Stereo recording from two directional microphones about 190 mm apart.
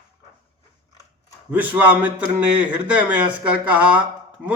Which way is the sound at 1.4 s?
10° right (ahead or behind).